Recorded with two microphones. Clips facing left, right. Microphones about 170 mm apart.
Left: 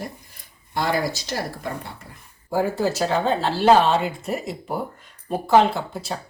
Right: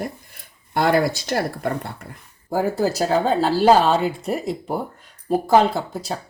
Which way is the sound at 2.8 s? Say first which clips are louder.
Right 2 dB; 40° right (ahead or behind).